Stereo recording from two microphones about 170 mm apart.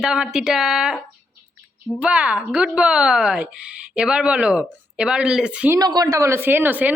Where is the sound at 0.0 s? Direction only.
5° right (ahead or behind).